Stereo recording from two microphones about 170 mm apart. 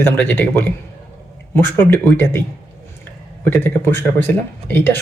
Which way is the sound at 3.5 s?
15° left (ahead or behind).